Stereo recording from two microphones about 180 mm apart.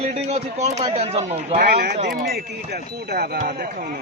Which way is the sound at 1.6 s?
60° right (ahead or behind).